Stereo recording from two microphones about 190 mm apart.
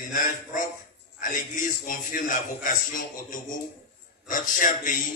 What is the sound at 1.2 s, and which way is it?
A man's voice, 45° left (ahead or behind).